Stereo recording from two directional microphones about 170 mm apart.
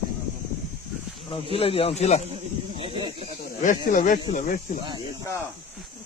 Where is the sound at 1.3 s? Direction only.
35° left (ahead or behind).